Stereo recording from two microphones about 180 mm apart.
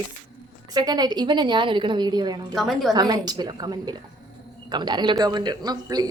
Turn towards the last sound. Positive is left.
turn(degrees=-20)  # may be behind; listen again after turning